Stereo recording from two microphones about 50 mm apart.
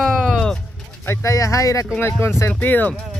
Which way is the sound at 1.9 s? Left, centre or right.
Left.